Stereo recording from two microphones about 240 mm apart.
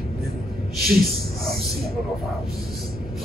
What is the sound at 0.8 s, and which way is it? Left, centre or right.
Speech, right.